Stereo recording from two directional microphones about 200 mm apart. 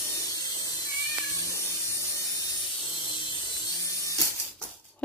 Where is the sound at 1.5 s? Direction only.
15° left (ahead or behind).